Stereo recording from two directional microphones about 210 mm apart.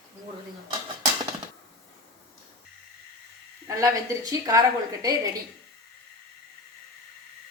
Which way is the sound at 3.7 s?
15° right (ahead or behind).